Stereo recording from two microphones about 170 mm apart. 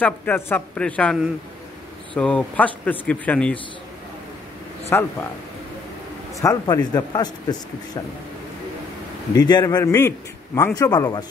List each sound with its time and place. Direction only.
0.0 s speech: 10° left (ahead or behind)
2.1 s speech: 5° left (ahead or behind)
4.9 s speech: 15° left (ahead or behind)
6.4 s a man's voice: 20° left (ahead or behind)
9.3 s a man's voice: 25° left (ahead or behind)